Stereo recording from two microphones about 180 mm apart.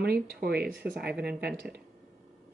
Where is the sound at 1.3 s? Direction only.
65° right (ahead or behind).